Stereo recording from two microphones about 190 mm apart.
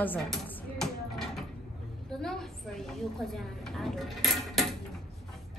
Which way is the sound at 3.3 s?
Centre (ahead or behind).